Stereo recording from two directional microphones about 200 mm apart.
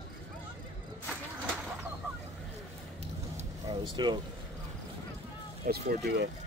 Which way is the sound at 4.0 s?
20° right (ahead or behind).